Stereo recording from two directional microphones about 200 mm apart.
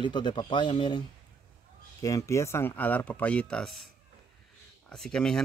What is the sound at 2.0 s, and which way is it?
Speech, 15° left (ahead or behind).